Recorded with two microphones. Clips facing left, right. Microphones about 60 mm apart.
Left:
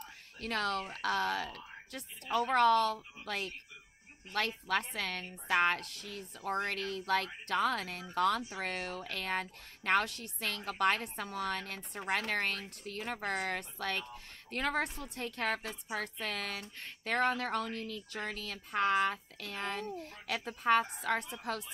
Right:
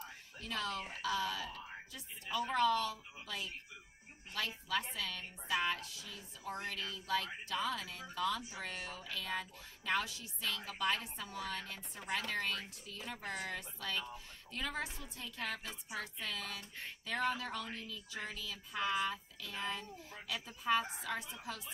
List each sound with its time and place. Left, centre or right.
0.4 s speech: left